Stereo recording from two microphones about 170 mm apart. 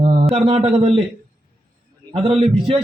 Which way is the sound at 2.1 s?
30° right (ahead or behind).